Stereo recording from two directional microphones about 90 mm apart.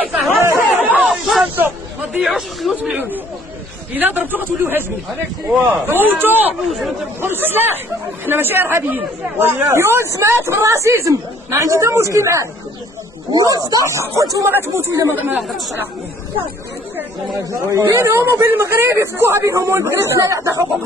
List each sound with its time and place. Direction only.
0.5 s chatter: 20° right (ahead or behind)
1.0 s snake: centre (ahead or behind)
1.4 s hubbub: 20° right (ahead or behind)
2.1 s a man's voice: 5° right (ahead or behind)
2.7 s speech: 15° right (ahead or behind)
5.9 s speech: 25° right (ahead or behind)
6.6 s a man's voice: centre (ahead or behind)
7.2 s speech: 25° right (ahead or behind)
13.3 s speech: 45° right (ahead or behind)
14.7 s speech: 25° right (ahead or behind)
17.5 s speech: 35° right (ahead or behind)